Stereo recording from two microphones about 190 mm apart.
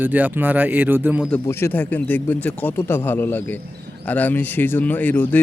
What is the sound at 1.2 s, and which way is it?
Speech, 10° left (ahead or behind).